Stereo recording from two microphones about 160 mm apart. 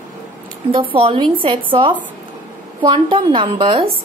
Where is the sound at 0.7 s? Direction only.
35° right (ahead or behind).